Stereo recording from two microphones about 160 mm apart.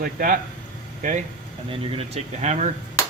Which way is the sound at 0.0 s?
60° right (ahead or behind).